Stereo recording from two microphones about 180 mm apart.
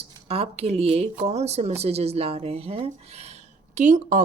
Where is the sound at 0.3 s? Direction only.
35° right (ahead or behind).